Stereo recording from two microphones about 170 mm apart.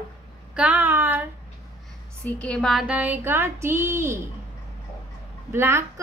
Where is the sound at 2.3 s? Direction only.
5° left (ahead or behind); by 4.2 s 15° right (ahead or behind).